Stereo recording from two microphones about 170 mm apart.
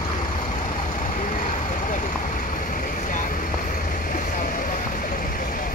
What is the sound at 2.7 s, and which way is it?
Vehicle, 55° left (ahead or behind).